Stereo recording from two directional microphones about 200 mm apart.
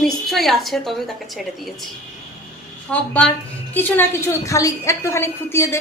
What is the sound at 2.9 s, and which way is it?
Speech, 5° left (ahead or behind).